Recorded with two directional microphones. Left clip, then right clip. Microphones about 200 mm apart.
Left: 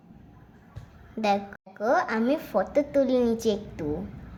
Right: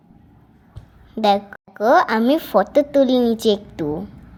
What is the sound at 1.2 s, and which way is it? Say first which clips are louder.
A woman's voice: right 8 dB; 30° right (ahead or behind).